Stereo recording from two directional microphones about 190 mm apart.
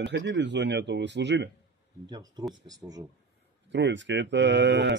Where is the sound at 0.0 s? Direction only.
70° right (ahead or behind).